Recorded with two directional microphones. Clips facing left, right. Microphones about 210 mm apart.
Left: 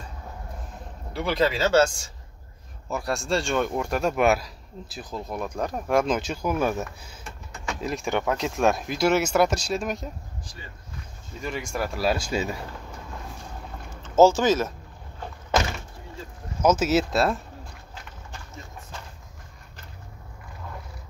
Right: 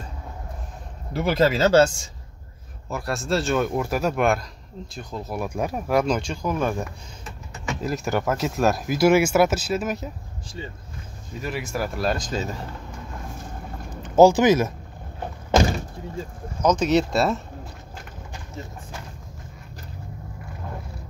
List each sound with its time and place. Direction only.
1.1 s speech: 45° right (ahead or behind)
2.9 s speech: centre (ahead or behind)
10.4 s speech: 25° right (ahead or behind)
11.4 s speech: 5° right (ahead or behind); by 12.5 s 10° left (ahead or behind)
14.0 s speech: 15° right (ahead or behind)
15.5 s door: 35° right (ahead or behind)
16.6 s speech: 5° left (ahead or behind)